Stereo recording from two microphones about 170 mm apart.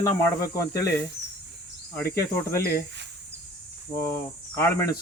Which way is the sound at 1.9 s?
15° left (ahead or behind).